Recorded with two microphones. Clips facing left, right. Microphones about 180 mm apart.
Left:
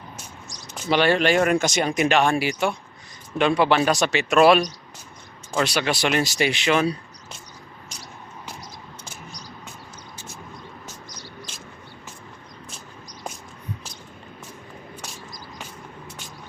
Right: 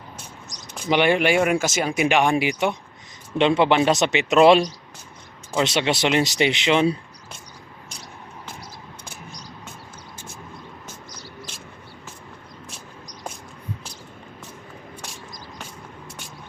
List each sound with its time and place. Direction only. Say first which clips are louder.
0.9 s speech: right 1 dB; 15° right (ahead or behind)